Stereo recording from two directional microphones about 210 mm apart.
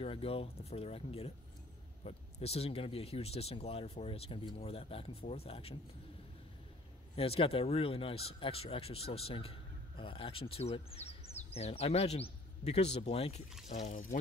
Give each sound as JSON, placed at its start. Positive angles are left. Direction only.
{"t": 0.0, "sound": "speech", "side_deg": 25}
{"t": 7.2, "sound": "speech", "side_deg": 25}